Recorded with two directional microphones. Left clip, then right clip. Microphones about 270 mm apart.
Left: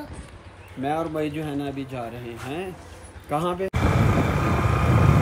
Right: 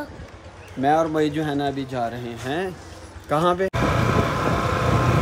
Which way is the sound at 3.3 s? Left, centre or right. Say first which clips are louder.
Right 5 dB; right.